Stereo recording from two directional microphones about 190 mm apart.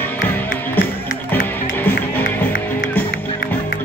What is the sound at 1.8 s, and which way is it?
Music, 10° left (ahead or behind).